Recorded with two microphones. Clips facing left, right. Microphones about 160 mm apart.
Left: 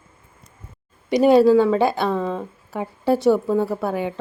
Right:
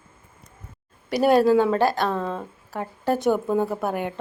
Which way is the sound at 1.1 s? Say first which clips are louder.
Left 4 dB; 10° right (ahead or behind).